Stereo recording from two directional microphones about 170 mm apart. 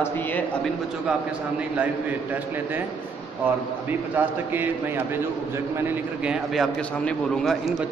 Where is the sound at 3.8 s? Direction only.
10° right (ahead or behind).